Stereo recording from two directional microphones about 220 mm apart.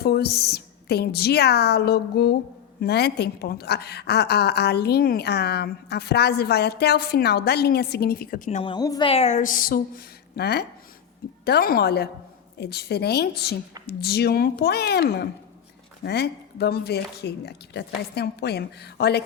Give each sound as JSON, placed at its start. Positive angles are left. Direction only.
{"t": 0.0, "sound": "a woman's voice", "side_deg": 45}
{"t": 8.7, "sound": "a woman's voice", "side_deg": 20}